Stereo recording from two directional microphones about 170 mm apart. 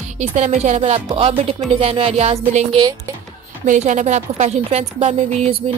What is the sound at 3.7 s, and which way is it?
A woman's voice, 45° right (ahead or behind).